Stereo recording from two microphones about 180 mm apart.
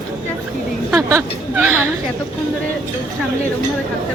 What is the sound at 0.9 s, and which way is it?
Speech, 10° right (ahead or behind).